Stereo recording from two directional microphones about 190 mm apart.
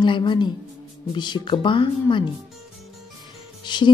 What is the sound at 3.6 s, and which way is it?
Music, 25° left (ahead or behind).